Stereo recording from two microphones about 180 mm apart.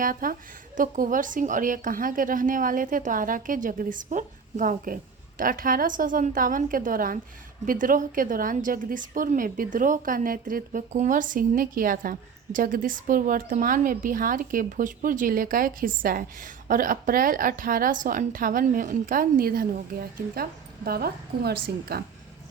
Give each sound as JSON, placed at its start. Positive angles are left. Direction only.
{"t": 0.0, "sound": "a woman's voice", "side_deg": -50}